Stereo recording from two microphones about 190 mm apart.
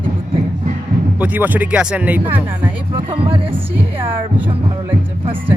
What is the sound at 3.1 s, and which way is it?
Music, 30° right (ahead or behind).